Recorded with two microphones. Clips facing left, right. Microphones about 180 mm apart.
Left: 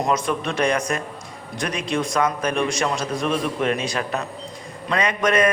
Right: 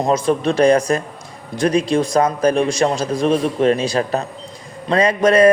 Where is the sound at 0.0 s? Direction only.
30° right (ahead or behind).